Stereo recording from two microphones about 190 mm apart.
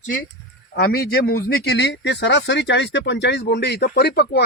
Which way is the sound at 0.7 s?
55° left (ahead or behind).